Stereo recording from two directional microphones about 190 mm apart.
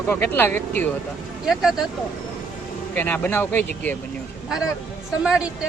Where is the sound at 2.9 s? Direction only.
10° left (ahead or behind).